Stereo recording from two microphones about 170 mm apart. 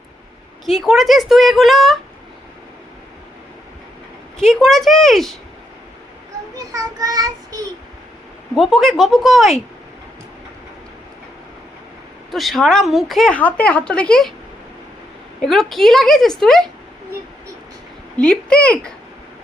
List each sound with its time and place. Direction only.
0.6 s speech: centre (ahead or behind)
4.4 s speech: centre (ahead or behind)
6.6 s a child's voice: 20° right (ahead or behind)
8.5 s speech: centre (ahead or behind)
12.3 s speech: centre (ahead or behind)
15.4 s speech: centre (ahead or behind)
18.2 s speech: 5° left (ahead or behind)